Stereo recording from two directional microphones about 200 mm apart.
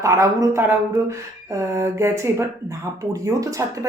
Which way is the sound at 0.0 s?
15° right (ahead or behind).